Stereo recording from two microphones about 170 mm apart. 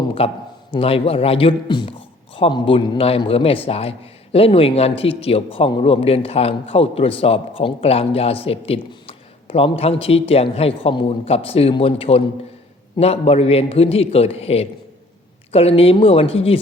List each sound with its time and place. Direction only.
0.2 s a man's voice: 35° left (ahead or behind)